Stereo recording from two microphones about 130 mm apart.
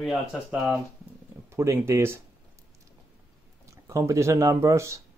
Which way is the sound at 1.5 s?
20° right (ahead or behind).